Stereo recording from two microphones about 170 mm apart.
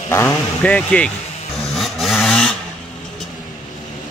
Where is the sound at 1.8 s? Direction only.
Centre (ahead or behind).